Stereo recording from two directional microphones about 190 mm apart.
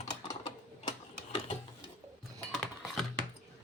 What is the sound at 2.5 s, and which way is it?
Music, centre (ahead or behind).